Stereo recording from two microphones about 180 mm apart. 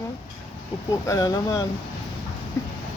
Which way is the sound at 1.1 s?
20° left (ahead or behind).